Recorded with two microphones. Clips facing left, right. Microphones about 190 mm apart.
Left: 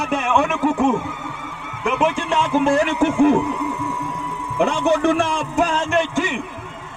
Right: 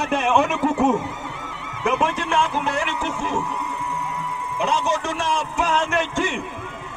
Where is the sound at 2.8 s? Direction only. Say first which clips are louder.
Left 10 dB; 50° left (ahead or behind).